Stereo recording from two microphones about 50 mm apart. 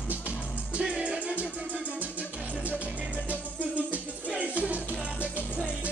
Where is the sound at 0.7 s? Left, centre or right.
Right.